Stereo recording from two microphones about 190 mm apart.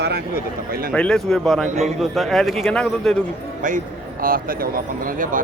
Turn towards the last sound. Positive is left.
turn(degrees=-45)  # may be behind; listen again after turning